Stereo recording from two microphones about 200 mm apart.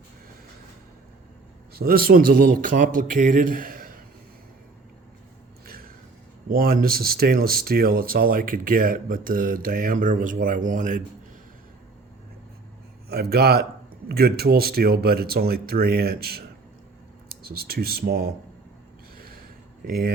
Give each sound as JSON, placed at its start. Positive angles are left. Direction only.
{"t": 1.7, "sound": "speech", "side_deg": -50}
{"t": 6.5, "sound": "speech", "side_deg": -45}
{"t": 13.1, "sound": "speech", "side_deg": -50}
{"t": 19.9, "sound": "speech", "side_deg": -50}